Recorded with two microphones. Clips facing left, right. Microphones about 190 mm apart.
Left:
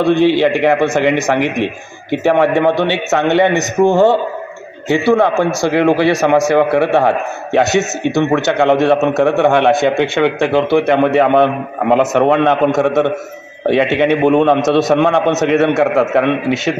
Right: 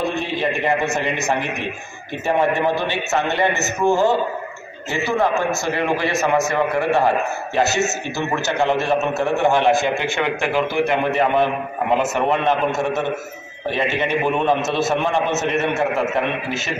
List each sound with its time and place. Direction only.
0.0 s a man's voice: 85° left; by 10.3 s 65° left (ahead or behind)
10.9 s a man's voice: 75° left (ahead or behind)
14.7 s a man's voice: 80° left; by 15.3 s 65° left (ahead or behind)
15.4 s a man's voice: 80° left